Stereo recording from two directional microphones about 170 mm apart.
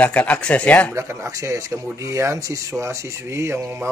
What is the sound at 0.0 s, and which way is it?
Speech, 10° left (ahead or behind).